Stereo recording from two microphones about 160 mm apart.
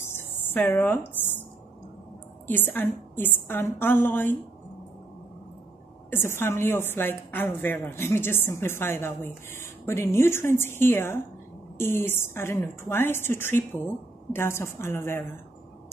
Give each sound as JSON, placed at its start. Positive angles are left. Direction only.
{"t": 0.0, "sound": "a sound", "side_deg": 15}
{"t": 2.4, "sound": "a woman's voice", "side_deg": 10}
{"t": 6.0, "sound": "a woman's voice", "side_deg": 15}